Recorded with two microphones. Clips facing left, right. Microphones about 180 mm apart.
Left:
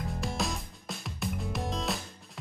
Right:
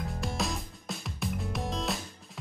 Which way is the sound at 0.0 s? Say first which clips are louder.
Even; centre (ahead or behind).